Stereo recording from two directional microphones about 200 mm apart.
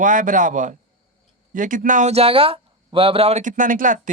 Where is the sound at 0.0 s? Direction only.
40° right (ahead or behind).